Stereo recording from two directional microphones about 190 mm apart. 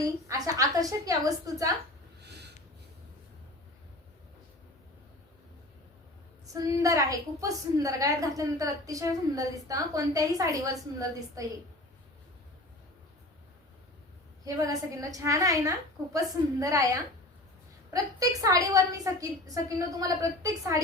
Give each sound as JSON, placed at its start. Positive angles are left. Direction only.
{"t": 0.0, "sound": "a woman's voice", "side_deg": -15}
{"t": 2.2, "sound": "snort", "side_deg": -60}
{"t": 6.4, "sound": "a woman's voice", "side_deg": -20}
{"t": 14.4, "sound": "a woman's voice", "side_deg": -20}
{"t": 17.9, "sound": "a woman's voice", "side_deg": -20}